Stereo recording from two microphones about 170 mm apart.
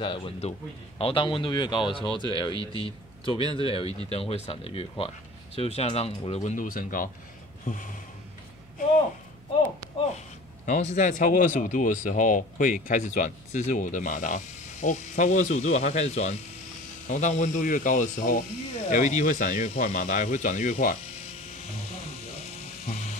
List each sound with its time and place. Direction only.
0.0 s speech: 30° left (ahead or behind); by 7.1 s 55° left (ahead or behind)
10.1 s a sound: 45° left (ahead or behind)
11.0 s speech: 50° left (ahead or behind)